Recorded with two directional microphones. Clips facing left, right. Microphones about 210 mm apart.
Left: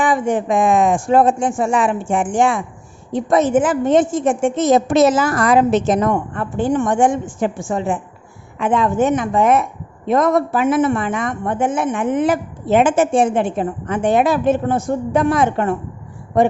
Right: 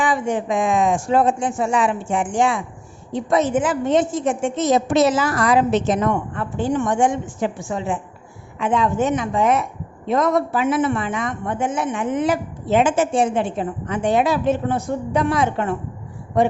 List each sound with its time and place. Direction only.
0.0 s a woman's voice: 50° left (ahead or behind)